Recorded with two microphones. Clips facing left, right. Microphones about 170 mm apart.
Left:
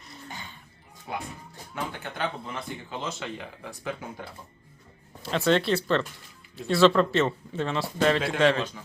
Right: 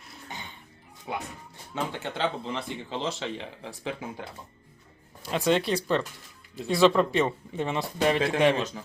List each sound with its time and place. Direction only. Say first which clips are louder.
0.0 s a sound: left 2 dB; 5° right (ahead or behind)
1.1 s speech: right 1 dB; 15° right (ahead or behind)
5.2 s speech: left 1 dB; 10° right (ahead or behind)